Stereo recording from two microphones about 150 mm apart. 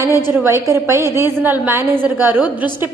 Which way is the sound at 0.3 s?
15° right (ahead or behind).